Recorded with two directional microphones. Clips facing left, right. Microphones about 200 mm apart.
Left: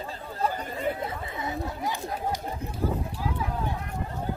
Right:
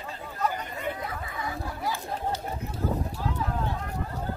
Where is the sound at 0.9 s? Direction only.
25° left (ahead or behind).